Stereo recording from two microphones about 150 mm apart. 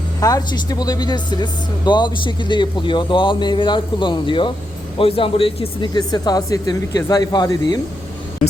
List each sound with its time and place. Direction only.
0.2 s speech: 25° left (ahead or behind)